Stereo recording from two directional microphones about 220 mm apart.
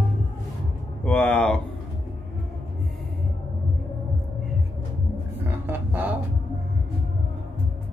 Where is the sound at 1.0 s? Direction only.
5° left (ahead or behind).